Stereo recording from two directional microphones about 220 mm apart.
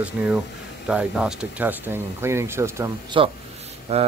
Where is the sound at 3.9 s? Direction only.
30° right (ahead or behind).